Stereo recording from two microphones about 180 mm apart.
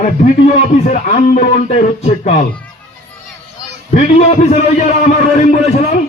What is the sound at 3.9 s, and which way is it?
A man's voice, 35° left (ahead or behind).